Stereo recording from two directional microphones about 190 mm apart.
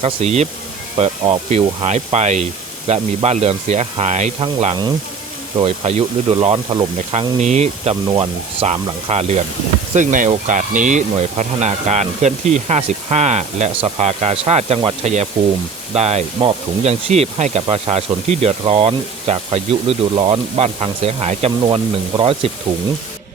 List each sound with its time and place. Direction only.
0.0 s speech: 35° right (ahead or behind)